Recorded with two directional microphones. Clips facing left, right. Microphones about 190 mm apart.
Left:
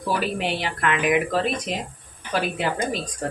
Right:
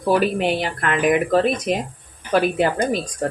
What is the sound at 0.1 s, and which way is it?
Speech, 45° right (ahead or behind).